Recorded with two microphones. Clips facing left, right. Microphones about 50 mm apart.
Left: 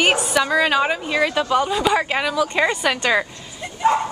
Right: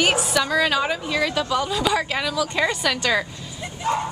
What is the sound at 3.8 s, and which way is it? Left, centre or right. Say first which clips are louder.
Dog: left 6 dB; left.